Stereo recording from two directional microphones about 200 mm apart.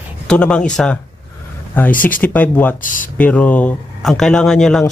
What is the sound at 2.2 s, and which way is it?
Speech, 10° left (ahead or behind).